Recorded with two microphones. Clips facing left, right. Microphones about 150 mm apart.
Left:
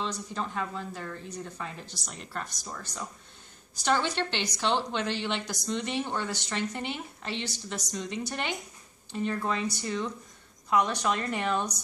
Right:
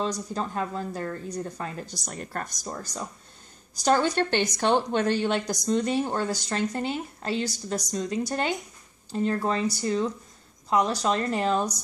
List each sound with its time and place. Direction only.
0.0 s a woman's voice: 40° right (ahead or behind)